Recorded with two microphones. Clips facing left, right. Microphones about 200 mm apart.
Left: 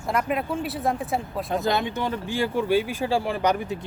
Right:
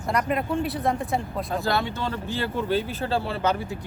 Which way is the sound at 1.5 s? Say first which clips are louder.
Left 2 dB; 20° left (ahead or behind).